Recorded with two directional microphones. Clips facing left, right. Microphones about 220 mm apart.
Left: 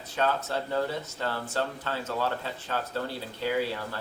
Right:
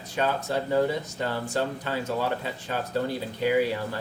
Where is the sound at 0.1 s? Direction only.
15° right (ahead or behind).